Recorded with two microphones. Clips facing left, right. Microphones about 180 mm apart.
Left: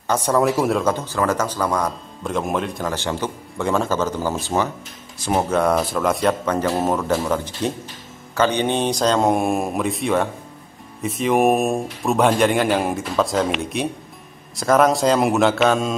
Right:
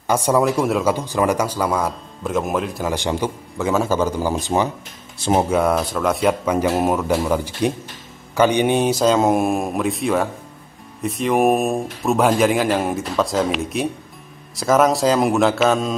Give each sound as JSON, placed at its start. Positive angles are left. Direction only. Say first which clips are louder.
{"t": 0.0, "sound": "a man's voice", "louder": "right 2 dB", "side_deg": -10}
{"t": 0.4, "sound": "speech", "louder": "even", "side_deg": 0}
{"t": 3.5, "sound": "speech", "louder": "right 1 dB", "side_deg": -5}
{"t": 5.5, "sound": "speech", "louder": "even", "side_deg": -5}